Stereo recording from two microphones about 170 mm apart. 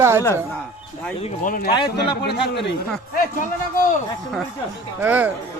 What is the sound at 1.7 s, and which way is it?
Speech, 30° left (ahead or behind).